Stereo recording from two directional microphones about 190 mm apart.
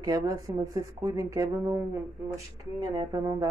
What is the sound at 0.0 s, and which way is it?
Speech, 20° right (ahead or behind).